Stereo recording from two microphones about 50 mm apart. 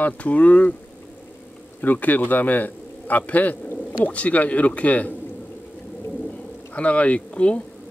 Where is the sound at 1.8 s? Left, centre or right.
Left.